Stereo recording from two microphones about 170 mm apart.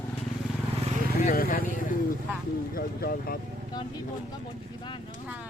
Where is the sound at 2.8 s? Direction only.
60° left (ahead or behind).